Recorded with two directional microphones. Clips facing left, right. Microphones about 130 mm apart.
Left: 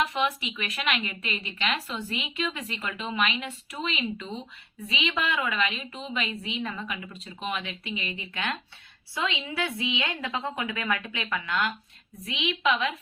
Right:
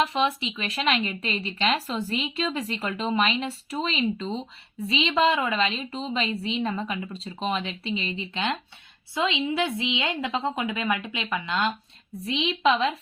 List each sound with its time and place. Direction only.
0.0 s a woman's voice: 30° right (ahead or behind)